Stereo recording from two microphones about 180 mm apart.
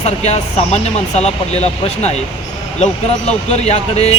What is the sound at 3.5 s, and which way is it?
Speech, 35° left (ahead or behind).